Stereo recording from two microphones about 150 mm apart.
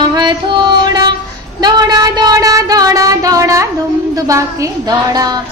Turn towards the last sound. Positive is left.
turn(degrees=-25)  # may be behind; listen again after turning